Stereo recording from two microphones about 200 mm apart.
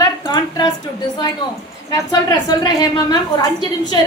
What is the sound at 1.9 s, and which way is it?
A woman's voice, 20° left (ahead or behind).